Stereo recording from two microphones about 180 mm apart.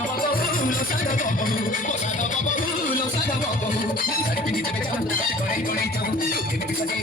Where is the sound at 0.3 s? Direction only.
50° left (ahead or behind).